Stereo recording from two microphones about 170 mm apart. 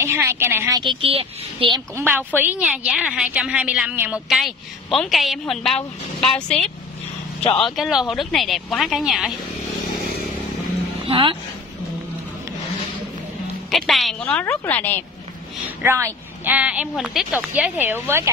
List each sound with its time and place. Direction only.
0.0 s speech: 15° right (ahead or behind)
0.7 s speech: 30° right (ahead or behind)
2.0 s a woman's voice: 10° right (ahead or behind); by 6.6 s 5° left (ahead or behind)
7.6 s a woman's voice: centre (ahead or behind)
11.1 s speech: 30° right (ahead or behind)
13.7 s a woman's voice: centre (ahead or behind)
15.8 s speech: 15° right (ahead or behind)